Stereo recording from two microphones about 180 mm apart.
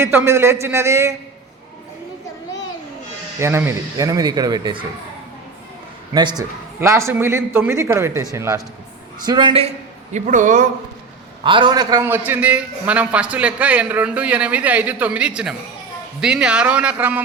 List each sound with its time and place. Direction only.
0.0 s a man's voice: 15° right (ahead or behind)
3.3 s speech: 15° right (ahead or behind)
6.1 s a man's voice: 25° right (ahead or behind)
10.1 s speech: 45° right (ahead or behind)
11.4 s a man's voice: 25° right (ahead or behind); by 17.2 s 10° right (ahead or behind)